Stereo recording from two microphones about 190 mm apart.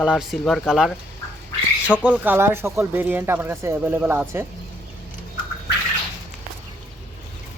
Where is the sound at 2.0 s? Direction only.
10° right (ahead or behind).